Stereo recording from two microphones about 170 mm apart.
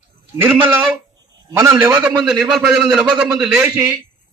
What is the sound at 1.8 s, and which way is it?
A man's voice, 5° right (ahead or behind).